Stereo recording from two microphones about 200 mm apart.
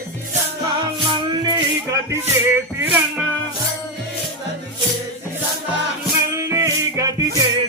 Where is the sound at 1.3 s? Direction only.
20° right (ahead or behind).